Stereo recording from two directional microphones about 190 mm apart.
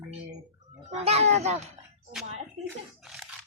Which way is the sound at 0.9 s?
35° right (ahead or behind).